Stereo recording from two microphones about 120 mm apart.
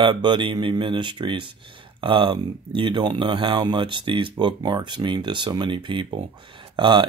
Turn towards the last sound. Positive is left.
turn(degrees=-40)  # may be behind; listen again after turning